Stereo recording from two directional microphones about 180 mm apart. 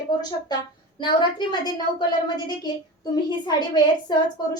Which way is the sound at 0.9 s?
25° left (ahead or behind).